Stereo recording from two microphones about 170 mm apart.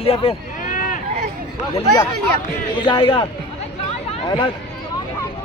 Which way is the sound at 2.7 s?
30° left (ahead or behind).